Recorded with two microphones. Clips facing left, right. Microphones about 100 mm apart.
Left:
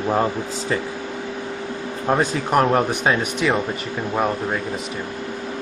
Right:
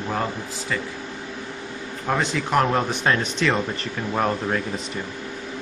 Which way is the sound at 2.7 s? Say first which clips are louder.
Left 3 dB; 10° left (ahead or behind).